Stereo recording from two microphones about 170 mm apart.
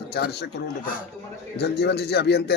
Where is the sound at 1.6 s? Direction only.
70° left (ahead or behind).